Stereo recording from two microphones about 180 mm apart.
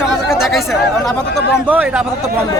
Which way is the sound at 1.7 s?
5° right (ahead or behind).